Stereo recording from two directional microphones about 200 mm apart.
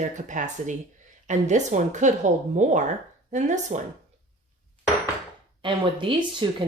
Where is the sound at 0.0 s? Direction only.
40° right (ahead or behind).